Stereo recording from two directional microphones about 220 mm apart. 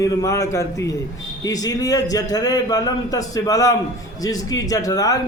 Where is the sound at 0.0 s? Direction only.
15° left (ahead or behind).